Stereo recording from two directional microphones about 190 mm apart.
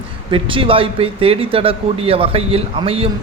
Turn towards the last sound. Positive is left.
turn(degrees=-30)  # may be behind; listen again after turning